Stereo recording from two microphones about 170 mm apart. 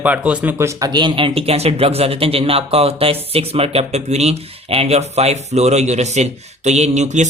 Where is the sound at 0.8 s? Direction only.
25° right (ahead or behind).